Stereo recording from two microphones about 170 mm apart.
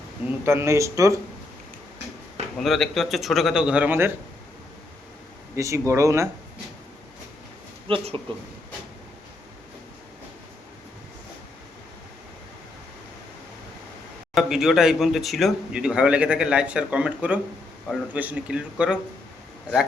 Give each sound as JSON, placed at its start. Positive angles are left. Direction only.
{"t": 0.3, "sound": "a man's voice", "side_deg": -15}
{"t": 2.6, "sound": "speech", "side_deg": 0}
{"t": 5.5, "sound": "a man's voice", "side_deg": -20}
{"t": 7.9, "sound": "speech", "side_deg": -30}
{"t": 14.3, "sound": "a man's voice", "side_deg": 0}